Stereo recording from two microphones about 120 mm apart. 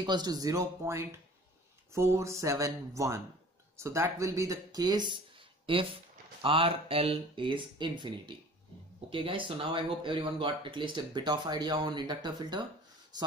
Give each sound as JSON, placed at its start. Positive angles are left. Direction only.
{"t": 0.0, "sound": "speech", "side_deg": -35}